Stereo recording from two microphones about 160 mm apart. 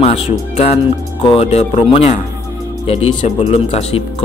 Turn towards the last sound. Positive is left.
turn(degrees=40)  # may be behind; listen again after turning